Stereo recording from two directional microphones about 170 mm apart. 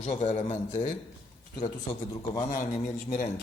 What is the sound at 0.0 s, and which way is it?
Speech, 45° left (ahead or behind).